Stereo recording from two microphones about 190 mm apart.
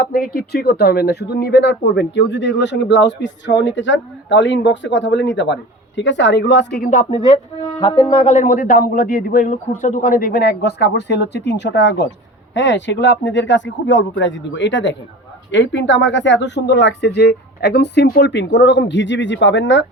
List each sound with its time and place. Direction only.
0.0 s speech: 50° left (ahead or behind)
6.9 s a woman's voice: 35° left (ahead or behind); by 19.8 s 70° left (ahead or behind)